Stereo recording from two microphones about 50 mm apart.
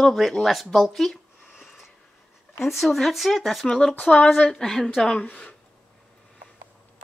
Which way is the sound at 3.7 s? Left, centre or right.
Centre.